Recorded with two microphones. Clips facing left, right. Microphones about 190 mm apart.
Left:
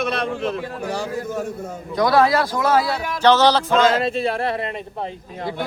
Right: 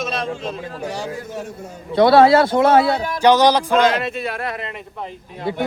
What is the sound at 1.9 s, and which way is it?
A man's voice, 30° right (ahead or behind).